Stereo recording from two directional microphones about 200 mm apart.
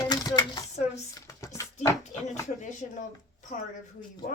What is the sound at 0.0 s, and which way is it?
Chopping, 20° left (ahead or behind).